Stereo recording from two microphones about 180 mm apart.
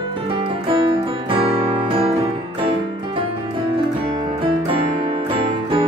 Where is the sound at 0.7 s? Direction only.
30° right (ahead or behind).